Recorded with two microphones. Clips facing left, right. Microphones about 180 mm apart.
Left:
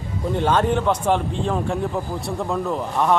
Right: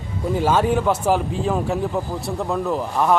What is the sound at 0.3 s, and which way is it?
A man's voice, 5° right (ahead or behind).